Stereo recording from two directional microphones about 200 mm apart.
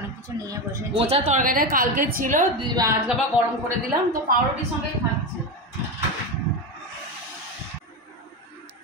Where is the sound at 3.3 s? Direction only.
5° right (ahead or behind).